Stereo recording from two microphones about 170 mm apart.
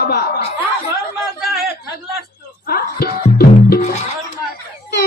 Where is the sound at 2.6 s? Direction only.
60° left (ahead or behind).